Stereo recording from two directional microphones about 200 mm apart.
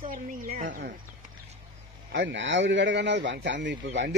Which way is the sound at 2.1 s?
65° right (ahead or behind).